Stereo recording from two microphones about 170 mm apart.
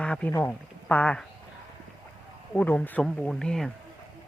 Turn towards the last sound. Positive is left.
turn(degrees=5)  # may be behind; listen again after turning